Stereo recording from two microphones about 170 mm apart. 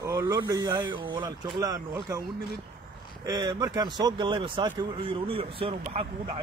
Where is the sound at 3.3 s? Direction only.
25° right (ahead or behind).